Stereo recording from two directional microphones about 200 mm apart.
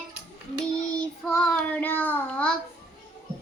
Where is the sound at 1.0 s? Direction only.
5° left (ahead or behind).